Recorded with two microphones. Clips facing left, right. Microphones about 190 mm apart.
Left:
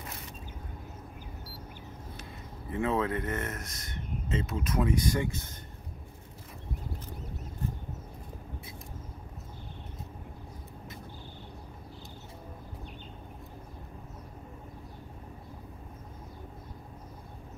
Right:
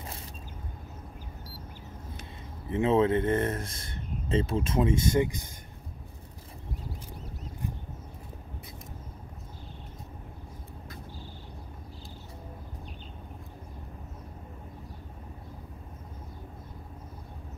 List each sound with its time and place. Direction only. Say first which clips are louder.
2.7 s speech: right 6 dB; 25° right (ahead or behind)